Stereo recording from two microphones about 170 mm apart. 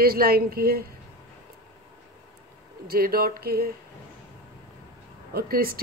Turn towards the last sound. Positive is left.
turn(degrees=-60)  # may be behind; listen again after turning